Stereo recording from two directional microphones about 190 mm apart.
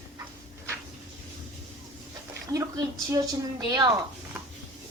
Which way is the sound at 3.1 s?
20° right (ahead or behind).